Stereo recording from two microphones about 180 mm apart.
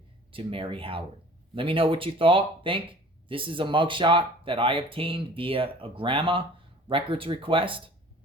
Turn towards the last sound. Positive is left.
turn(degrees=-30)  # may be behind; listen again after turning